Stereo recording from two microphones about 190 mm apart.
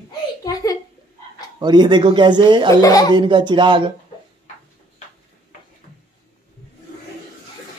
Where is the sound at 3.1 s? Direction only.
25° right (ahead or behind).